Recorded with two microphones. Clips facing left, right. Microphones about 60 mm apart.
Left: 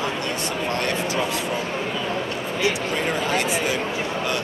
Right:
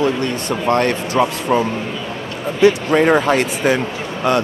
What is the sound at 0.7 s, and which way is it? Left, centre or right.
Speech, right.